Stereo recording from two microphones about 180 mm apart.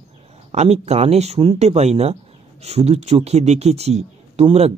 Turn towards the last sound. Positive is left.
turn(degrees=-35)  # may be behind; listen again after turning